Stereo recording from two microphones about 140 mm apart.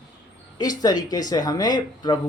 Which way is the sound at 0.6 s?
30° left (ahead or behind).